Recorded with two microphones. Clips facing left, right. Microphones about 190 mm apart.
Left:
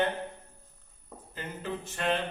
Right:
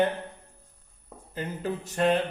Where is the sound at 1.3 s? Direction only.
40° right (ahead or behind).